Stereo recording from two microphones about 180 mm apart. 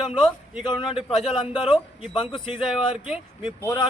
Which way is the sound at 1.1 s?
Centre (ahead or behind).